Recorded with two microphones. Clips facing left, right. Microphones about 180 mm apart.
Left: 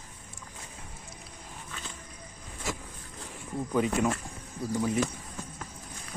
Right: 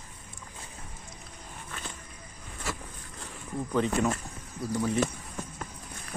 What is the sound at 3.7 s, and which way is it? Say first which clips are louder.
Speech: even; 10° left (ahead or behind).